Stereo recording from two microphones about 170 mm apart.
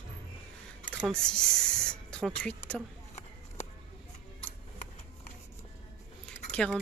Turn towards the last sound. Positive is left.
turn(degrees=5)  # may be behind; listen again after turning